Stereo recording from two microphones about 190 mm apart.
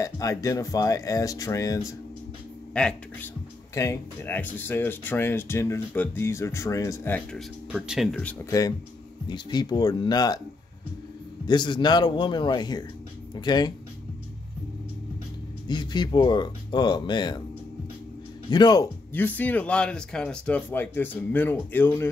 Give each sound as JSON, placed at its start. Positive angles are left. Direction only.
{"t": 0.0, "sound": "speech", "side_deg": 15}
{"t": 2.7, "sound": "speech", "side_deg": 5}
{"t": 3.7, "sound": "speech", "side_deg": 15}
{"t": 8.5, "sound": "speech", "side_deg": 20}
{"t": 11.4, "sound": "speech", "side_deg": 25}
{"t": 15.7, "sound": "speech", "side_deg": 20}
{"t": 18.5, "sound": "speech", "side_deg": 20}
{"t": 19.1, "sound": "speech", "side_deg": 10}